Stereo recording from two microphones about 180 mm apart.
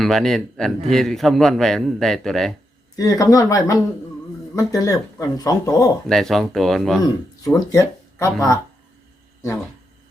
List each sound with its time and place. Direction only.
0.0 s a man's voice: centre (ahead or behind)
2.9 s speech: 20° left (ahead or behind)
6.1 s a man's voice: centre (ahead or behind)
7.0 s speech: 20° left (ahead or behind)